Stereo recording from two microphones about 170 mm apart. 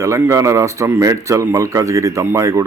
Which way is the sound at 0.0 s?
15° right (ahead or behind).